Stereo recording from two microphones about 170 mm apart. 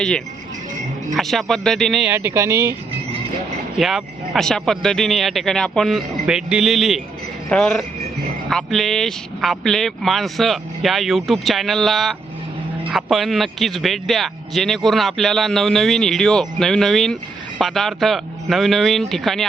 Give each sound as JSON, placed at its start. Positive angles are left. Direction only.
{"t": 1.1, "sound": "speech", "side_deg": 0}
{"t": 2.1, "sound": "speech", "side_deg": -15}
{"t": 3.8, "sound": "speech", "side_deg": 0}